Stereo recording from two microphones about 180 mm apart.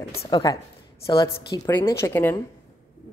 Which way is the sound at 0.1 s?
35° left (ahead or behind).